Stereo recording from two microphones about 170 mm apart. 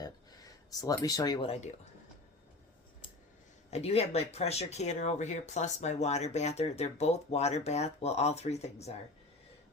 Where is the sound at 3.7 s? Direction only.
40° left (ahead or behind).